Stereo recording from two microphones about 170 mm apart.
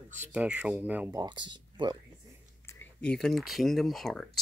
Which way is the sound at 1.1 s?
25° right (ahead or behind).